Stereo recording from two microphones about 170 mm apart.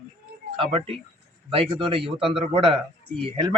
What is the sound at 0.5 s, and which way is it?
Speech, 35° right (ahead or behind).